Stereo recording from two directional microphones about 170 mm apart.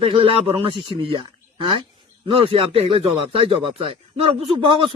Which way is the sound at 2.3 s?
30° right (ahead or behind).